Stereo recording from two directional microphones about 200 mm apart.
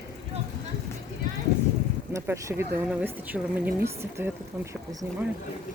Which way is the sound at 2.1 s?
15° right (ahead or behind).